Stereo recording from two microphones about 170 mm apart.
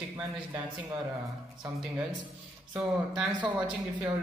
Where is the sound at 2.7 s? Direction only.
5° right (ahead or behind).